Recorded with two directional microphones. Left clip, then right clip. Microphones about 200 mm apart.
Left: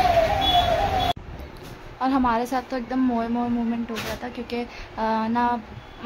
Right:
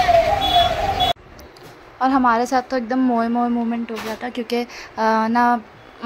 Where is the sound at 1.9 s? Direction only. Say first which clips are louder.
Right 6 dB; 20° right (ahead or behind).